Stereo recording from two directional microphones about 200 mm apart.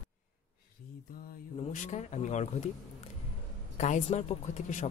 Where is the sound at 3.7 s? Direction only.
35° left (ahead or behind).